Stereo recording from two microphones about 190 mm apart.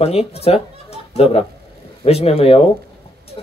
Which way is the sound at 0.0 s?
30° left (ahead or behind).